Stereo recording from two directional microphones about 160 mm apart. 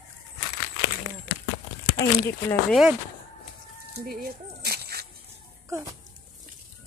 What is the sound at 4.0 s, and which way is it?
Dog, 70° right (ahead or behind).